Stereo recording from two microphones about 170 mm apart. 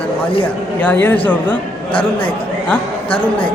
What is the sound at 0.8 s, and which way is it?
Speech, 10° left (ahead or behind).